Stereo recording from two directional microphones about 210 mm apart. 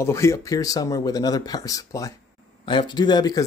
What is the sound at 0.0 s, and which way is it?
Speech, 15° left (ahead or behind).